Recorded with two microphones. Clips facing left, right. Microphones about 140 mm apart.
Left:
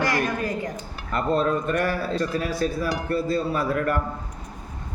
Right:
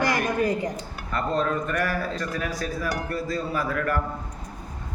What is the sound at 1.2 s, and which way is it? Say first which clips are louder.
Speech: left 3 dB; 25° left (ahead or behind).